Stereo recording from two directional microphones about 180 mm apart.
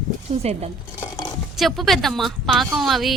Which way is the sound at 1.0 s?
20° left (ahead or behind).